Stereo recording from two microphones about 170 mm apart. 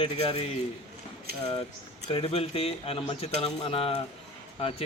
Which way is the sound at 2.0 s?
35° left (ahead or behind).